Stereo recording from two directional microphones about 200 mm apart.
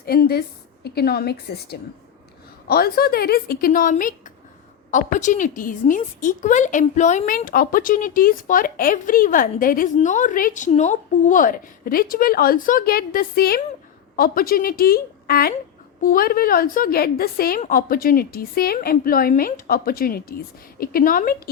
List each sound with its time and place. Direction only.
0.0 s a woman's voice: 50° left (ahead or behind)